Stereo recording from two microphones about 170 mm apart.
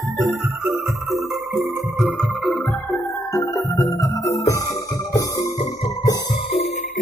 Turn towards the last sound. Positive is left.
turn(degrees=20)  # may be behind; listen again after turning